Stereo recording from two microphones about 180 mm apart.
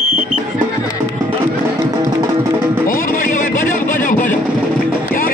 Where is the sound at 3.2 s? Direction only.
45° left (ahead or behind).